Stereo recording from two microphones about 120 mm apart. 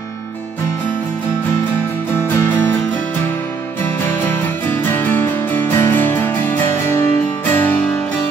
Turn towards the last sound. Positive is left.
turn(degrees=15)  # may be behind; listen again after turning